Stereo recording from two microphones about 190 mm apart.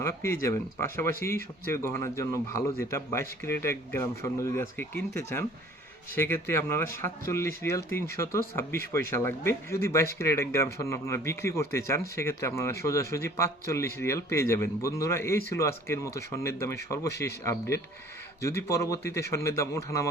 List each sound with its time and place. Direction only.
0.0 s speech: 15° left (ahead or behind)